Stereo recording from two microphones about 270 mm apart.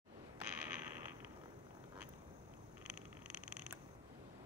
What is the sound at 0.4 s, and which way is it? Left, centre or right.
Mechanisms, centre.